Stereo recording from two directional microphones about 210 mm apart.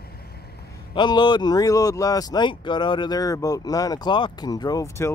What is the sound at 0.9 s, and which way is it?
Speech, 20° left (ahead or behind).